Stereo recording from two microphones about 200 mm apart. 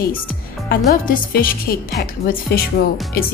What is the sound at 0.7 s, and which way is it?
A woman's voice, 45° left (ahead or behind).